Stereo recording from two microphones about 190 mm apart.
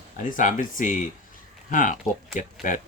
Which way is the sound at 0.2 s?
45° left (ahead or behind).